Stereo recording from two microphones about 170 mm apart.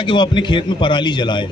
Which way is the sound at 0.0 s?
25° left (ahead or behind).